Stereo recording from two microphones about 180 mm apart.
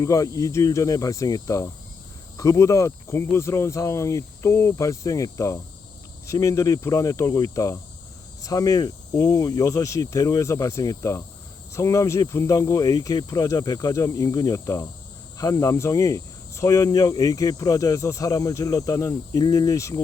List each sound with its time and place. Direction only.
0.0 s cricket: 20° left (ahead or behind)
2.4 s speech: 15° left (ahead or behind)
8.4 s cricket: 20° left (ahead or behind)